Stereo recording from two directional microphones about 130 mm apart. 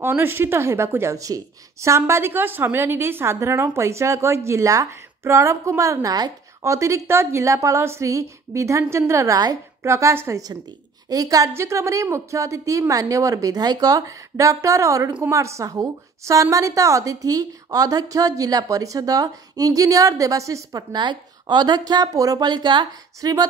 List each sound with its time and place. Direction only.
0.0 s a woman's voice: 20° right (ahead or behind); by 23.4 s 35° right (ahead or behind)